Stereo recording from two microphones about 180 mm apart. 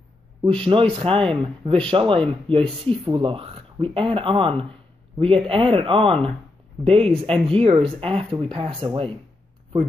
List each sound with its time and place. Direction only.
0.5 s speech: 30° right (ahead or behind)